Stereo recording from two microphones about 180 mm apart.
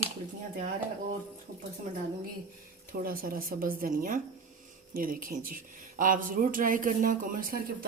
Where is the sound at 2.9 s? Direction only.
50° right (ahead or behind).